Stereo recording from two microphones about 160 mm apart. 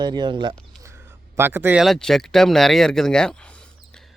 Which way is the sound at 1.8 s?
Centre (ahead or behind).